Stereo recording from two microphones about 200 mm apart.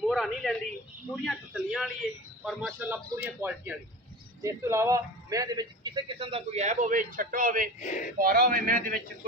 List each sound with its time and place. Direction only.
0.0 s a sound: centre (ahead or behind)
1.1 s a man's voice: centre (ahead or behind); by 7.7 s 45° right (ahead or behind)
7.8 s speech: 40° left (ahead or behind)
8.2 s a man's voice: 45° right (ahead or behind)